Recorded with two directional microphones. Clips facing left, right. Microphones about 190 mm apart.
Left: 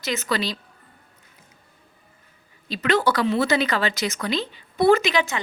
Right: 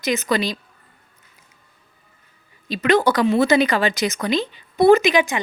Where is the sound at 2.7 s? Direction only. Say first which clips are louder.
Right 4 dB; 15° right (ahead or behind).